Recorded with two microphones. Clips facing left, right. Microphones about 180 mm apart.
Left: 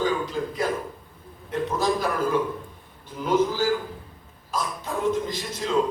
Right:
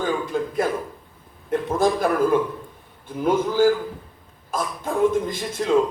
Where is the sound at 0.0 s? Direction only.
55° right (ahead or behind).